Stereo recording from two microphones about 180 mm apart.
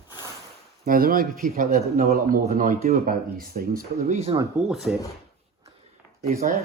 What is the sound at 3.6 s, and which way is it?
Speech, 50° right (ahead or behind).